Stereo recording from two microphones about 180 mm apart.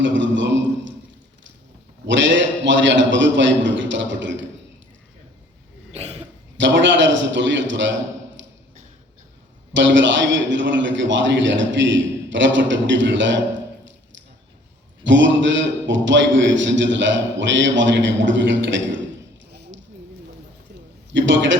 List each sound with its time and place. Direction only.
0.0 s a sound: 90° right
2.0 s a man's voice: 90° right
5.9 s cough: 35° right (ahead or behind)
6.6 s a man's voice: 90° right
9.7 s a man's voice: 90° right
15.0 s a man's voice: 90° right
19.5 s a sound: 70° right (ahead or behind)
21.1 s a man's voice: 90° right